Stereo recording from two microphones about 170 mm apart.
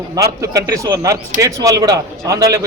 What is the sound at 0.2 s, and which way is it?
A man's voice, 20° right (ahead or behind).